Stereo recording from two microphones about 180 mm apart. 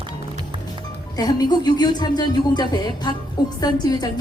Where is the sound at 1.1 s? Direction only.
20° left (ahead or behind).